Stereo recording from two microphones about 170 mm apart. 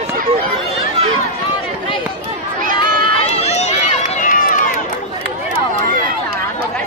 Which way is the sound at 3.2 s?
35° left (ahead or behind).